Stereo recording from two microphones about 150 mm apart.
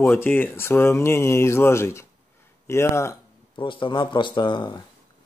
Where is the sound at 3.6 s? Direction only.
35° left (ahead or behind).